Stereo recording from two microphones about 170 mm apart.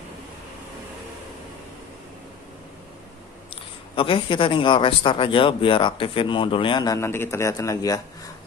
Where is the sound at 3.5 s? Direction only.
30° left (ahead or behind).